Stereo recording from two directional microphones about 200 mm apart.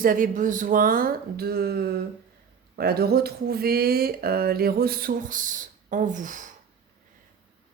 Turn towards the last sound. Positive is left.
turn(degrees=-40)  # may be behind; listen again after turning